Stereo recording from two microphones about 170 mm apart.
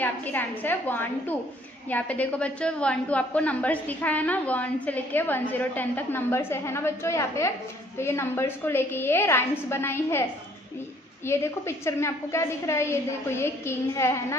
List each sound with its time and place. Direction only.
0.0 s a woman's voice: 10° left (ahead or behind)
11.2 s a woman's voice: 15° left (ahead or behind)